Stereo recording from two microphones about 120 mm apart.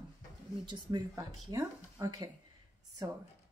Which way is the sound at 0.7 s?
35° right (ahead or behind).